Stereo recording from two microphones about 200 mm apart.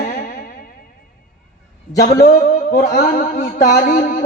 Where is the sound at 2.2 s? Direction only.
40° left (ahead or behind).